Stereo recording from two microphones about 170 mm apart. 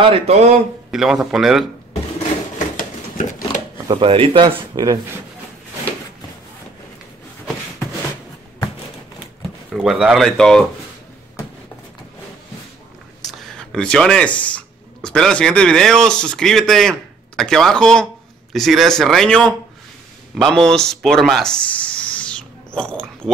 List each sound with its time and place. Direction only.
0.0 s speech: 35° right (ahead or behind)
0.9 s speech: 5° right (ahead or behind)
2.8 s a sound: 50° left (ahead or behind)
3.9 s speech: 30° right (ahead or behind)
4.7 s speech: 20° right (ahead or behind)
9.7 s speech: 5° right (ahead or behind)
13.3 s speech: 5° left (ahead or behind)